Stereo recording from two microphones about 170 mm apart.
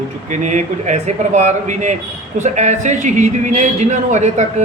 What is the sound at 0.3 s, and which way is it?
A man's voice, 45° right (ahead or behind).